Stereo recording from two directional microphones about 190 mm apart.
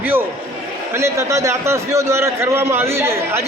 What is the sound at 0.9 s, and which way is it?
A man's voice, 15° right (ahead or behind).